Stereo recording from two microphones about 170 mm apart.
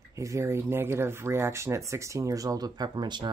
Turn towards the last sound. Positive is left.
turn(degrees=-25)  # may be behind; listen again after turning